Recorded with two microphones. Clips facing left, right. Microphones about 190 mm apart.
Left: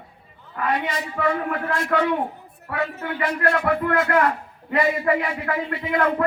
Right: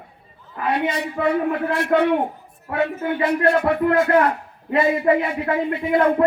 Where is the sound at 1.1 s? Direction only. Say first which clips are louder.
Right 3 dB; 25° right (ahead or behind).